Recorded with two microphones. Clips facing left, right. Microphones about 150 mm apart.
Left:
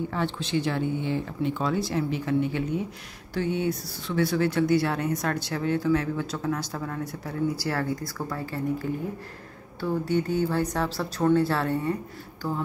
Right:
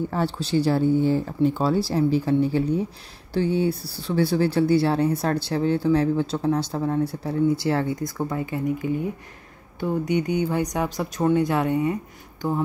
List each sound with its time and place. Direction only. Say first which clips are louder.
0.1 s speech: right 4 dB; 35° right (ahead or behind); by 12.6 s 20° right (ahead or behind)